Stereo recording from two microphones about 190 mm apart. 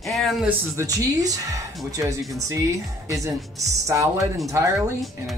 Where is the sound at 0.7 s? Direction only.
15° right (ahead or behind).